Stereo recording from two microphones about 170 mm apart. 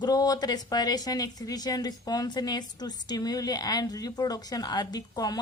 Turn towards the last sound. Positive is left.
turn(degrees=20)  # may be behind; listen again after turning